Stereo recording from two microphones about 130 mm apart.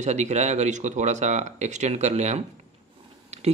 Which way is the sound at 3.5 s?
55° right (ahead or behind).